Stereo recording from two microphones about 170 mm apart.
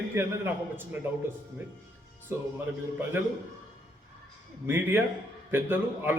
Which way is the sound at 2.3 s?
15° right (ahead or behind).